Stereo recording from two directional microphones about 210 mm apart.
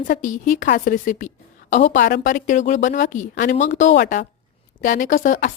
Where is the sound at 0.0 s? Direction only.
40° left (ahead or behind).